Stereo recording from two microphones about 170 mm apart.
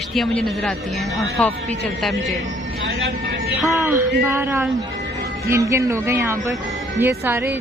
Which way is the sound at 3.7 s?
15° right (ahead or behind).